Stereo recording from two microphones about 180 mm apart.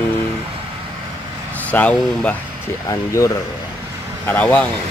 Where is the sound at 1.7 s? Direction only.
10° left (ahead or behind).